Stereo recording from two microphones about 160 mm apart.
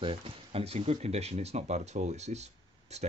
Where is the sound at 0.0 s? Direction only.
35° right (ahead or behind).